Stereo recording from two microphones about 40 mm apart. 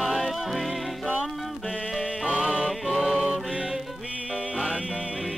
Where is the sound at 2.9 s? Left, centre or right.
Centre.